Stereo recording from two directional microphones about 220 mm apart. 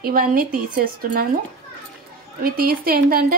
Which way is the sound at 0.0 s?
40° right (ahead or behind).